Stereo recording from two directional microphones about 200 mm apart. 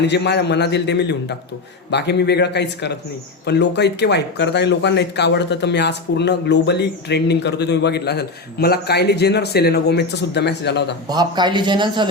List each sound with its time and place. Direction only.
0.1 s speech: 60° left (ahead or behind)
11.1 s a man's voice: 20° right (ahead or behind)